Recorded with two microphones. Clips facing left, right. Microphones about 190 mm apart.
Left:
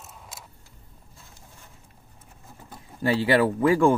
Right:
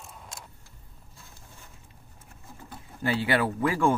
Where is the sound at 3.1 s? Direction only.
30° left (ahead or behind).